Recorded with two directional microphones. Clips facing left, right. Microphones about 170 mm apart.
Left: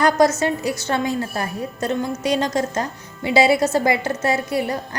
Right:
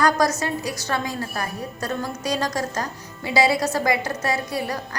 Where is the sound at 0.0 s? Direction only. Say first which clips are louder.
Left 4 dB; 25° left (ahead or behind).